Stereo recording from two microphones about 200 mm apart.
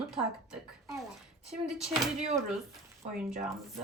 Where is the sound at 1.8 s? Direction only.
Centre (ahead or behind).